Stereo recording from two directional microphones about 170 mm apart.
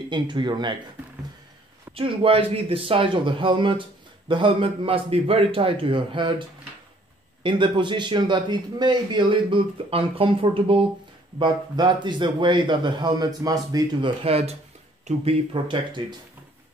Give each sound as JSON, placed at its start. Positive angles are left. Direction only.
{"t": 0.1, "sound": "a man's voice", "side_deg": -25}
{"t": 2.0, "sound": "a man's voice", "side_deg": -35}
{"t": 7.4, "sound": "a man's voice", "side_deg": -30}
{"t": 14.2, "sound": "a man's voice", "side_deg": -35}